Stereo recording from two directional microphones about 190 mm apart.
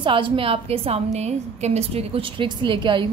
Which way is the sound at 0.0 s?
25° right (ahead or behind).